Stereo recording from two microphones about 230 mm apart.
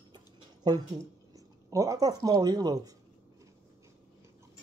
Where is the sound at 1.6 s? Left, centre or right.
Centre.